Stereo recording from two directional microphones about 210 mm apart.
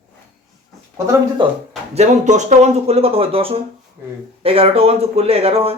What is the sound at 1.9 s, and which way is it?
Speech, 30° right (ahead or behind).